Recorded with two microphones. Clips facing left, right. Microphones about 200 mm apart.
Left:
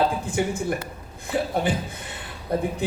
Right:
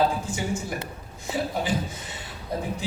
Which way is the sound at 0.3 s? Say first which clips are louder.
Left 5 dB; 55° left (ahead or behind).